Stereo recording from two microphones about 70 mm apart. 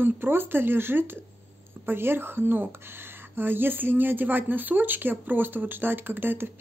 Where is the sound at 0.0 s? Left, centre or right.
Right.